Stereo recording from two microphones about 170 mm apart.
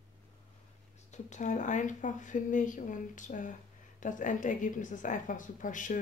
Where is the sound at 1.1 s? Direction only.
45° left (ahead or behind).